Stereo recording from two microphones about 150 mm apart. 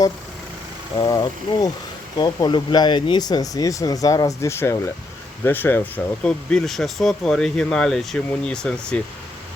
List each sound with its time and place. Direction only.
0.9 s speech: 30° left (ahead or behind); by 9.0 s 5° left (ahead or behind)